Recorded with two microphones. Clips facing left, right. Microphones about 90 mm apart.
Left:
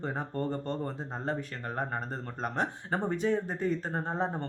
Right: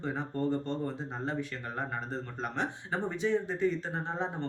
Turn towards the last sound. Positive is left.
turn(degrees=40)  # may be behind; listen again after turning